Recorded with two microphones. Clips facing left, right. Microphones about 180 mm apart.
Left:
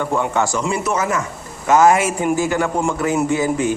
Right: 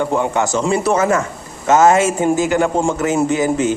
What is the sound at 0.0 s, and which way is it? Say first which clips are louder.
A man's voice: right 2 dB; 20° right (ahead or behind).